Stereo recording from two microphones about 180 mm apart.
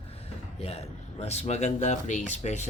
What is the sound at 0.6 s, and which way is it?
Speech, 35° left (ahead or behind).